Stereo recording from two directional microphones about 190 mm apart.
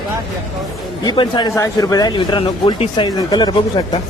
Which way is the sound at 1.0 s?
25° left (ahead or behind).